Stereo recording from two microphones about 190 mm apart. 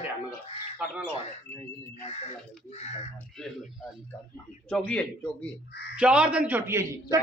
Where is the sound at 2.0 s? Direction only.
35° left (ahead or behind).